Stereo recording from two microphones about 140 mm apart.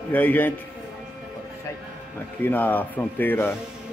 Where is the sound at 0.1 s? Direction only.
15° left (ahead or behind).